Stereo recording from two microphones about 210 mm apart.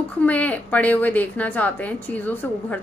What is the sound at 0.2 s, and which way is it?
A woman's voice, 5° left (ahead or behind).